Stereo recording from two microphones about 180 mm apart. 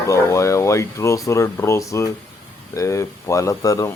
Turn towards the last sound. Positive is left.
turn(degrees=20)  # may be behind; listen again after turning